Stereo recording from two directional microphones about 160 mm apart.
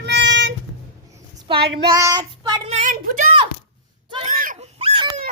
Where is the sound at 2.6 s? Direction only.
45° right (ahead or behind).